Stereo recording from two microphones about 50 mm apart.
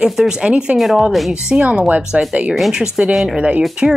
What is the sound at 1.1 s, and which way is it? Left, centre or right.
Speech, centre.